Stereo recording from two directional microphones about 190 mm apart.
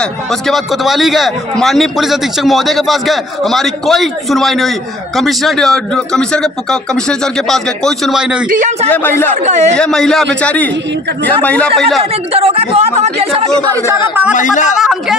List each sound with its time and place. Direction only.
0.0 s speech: centre (ahead or behind)
8.5 s speech: 45° right (ahead or behind)
8.9 s a man's voice: 10° left (ahead or behind)
9.4 s speech: 35° right (ahead or behind)
9.8 s a man's voice: 5° left (ahead or behind)
12.3 s speech: 30° right (ahead or behind)
13.8 s speech: 10° right (ahead or behind)
14.3 s speech: 40° left (ahead or behind)
14.8 s speech: centre (ahead or behind)